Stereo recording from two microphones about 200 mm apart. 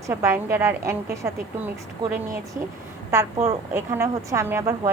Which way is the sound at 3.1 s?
15° right (ahead or behind).